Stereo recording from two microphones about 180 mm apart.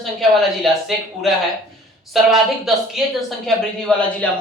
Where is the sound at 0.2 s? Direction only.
Centre (ahead or behind).